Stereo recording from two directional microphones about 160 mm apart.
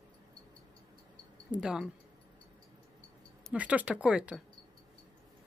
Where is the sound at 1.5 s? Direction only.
5° right (ahead or behind).